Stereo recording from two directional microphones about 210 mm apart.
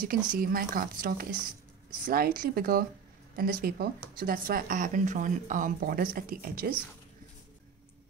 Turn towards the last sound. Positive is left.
turn(degrees=-45)  # may be behind; listen again after turning